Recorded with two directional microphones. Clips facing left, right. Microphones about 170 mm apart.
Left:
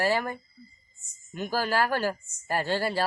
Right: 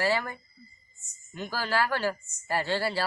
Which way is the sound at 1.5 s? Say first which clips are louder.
Left 2 dB; 45° left (ahead or behind).